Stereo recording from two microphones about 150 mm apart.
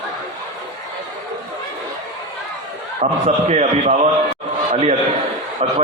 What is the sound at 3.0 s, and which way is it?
A man's voice, 50° right (ahead or behind).